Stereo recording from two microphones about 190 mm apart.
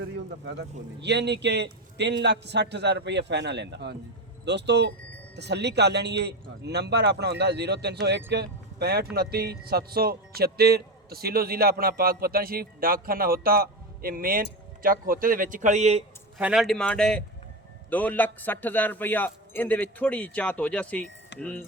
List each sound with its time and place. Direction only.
1.0 s a man's voice: 65° right (ahead or behind); by 16.0 s 35° right (ahead or behind)
16.4 s a man's voice: 5° right (ahead or behind)